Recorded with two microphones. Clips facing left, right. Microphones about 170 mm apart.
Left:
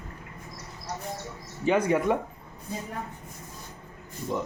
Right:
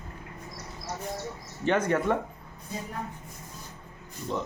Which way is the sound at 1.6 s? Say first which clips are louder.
Left 2 dB; 10° left (ahead or behind).